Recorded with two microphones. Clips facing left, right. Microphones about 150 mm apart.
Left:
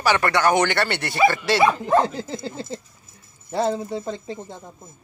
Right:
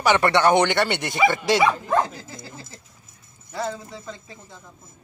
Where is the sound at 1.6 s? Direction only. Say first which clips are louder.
Left 6 dB; 15° left (ahead or behind).